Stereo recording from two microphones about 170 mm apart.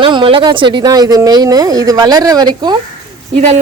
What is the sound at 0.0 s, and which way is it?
Speech, 30° right (ahead or behind).